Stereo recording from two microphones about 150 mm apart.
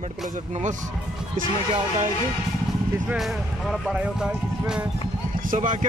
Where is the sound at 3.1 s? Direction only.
Centre (ahead or behind).